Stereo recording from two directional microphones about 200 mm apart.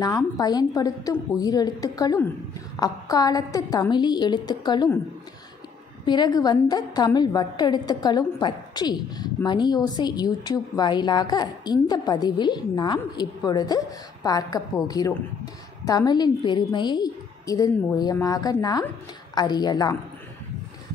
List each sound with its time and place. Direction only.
0.0 s a woman's voice: 20° left (ahead or behind)
6.0 s a woman's voice: 20° left (ahead or behind)